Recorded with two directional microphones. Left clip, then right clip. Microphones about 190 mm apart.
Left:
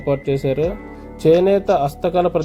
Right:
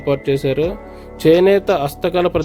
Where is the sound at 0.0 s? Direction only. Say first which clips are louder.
Right 2 dB; 25° right (ahead or behind).